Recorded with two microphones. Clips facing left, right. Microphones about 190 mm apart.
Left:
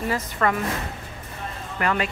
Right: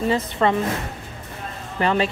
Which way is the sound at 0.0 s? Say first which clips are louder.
Right 4 dB; 25° right (ahead or behind).